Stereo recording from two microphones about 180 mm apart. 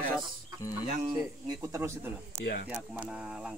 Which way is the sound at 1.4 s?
20° right (ahead or behind).